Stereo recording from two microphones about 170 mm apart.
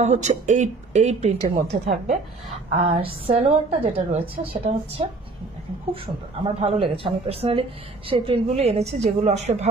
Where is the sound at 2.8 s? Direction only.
35° right (ahead or behind).